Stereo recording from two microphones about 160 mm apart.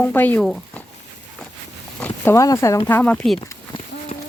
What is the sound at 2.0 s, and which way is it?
Speech, 15° left (ahead or behind).